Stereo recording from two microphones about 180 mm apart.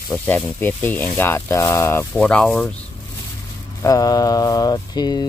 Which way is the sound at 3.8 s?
20° left (ahead or behind).